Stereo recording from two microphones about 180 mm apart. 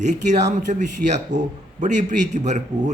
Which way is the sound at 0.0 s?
40° right (ahead or behind).